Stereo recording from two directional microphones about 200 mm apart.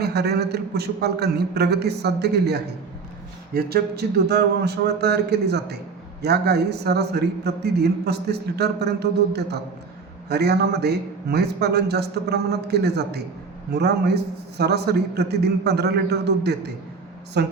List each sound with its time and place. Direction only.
0.0 s a man's voice: 55° right (ahead or behind)